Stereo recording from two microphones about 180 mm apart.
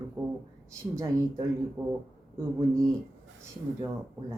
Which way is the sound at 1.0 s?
15° right (ahead or behind).